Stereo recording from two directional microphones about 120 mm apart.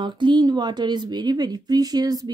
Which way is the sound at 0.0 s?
40° right (ahead or behind).